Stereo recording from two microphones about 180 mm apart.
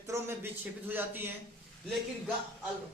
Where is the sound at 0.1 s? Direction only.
15° right (ahead or behind).